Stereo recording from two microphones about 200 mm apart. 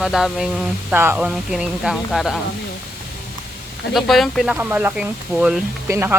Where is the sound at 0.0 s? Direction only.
Centre (ahead or behind).